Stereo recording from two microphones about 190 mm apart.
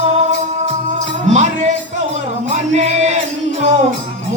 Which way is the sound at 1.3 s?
40° right (ahead or behind).